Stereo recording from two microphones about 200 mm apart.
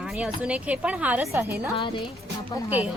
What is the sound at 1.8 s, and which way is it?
Speech, 25° left (ahead or behind).